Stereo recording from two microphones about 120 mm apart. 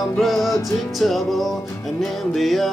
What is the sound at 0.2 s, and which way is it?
Music, centre (ahead or behind).